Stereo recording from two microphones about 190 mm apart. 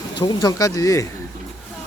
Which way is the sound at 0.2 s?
20° left (ahead or behind).